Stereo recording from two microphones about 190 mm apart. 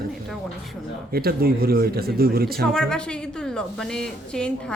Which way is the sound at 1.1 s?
55° right (ahead or behind).